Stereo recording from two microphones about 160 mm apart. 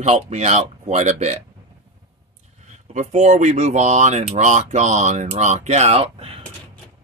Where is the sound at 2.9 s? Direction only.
45° right (ahead or behind).